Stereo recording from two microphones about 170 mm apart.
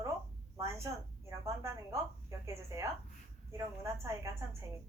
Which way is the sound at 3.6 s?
15° right (ahead or behind).